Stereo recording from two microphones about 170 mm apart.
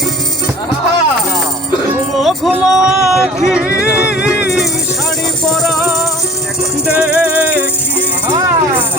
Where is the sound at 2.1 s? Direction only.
Centre (ahead or behind).